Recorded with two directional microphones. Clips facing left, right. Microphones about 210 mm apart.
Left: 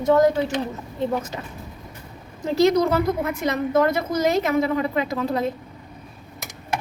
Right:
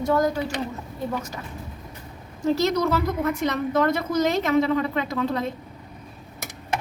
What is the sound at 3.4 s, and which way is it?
A woman's voice, 5° left (ahead or behind).